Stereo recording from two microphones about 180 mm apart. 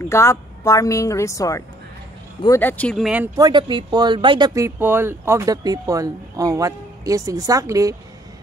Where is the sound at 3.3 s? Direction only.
25° right (ahead or behind).